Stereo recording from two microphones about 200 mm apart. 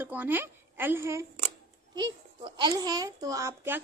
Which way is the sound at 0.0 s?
10° right (ahead or behind).